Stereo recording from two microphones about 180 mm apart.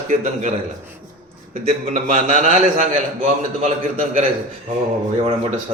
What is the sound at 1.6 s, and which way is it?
A man's voice, 40° right (ahead or behind).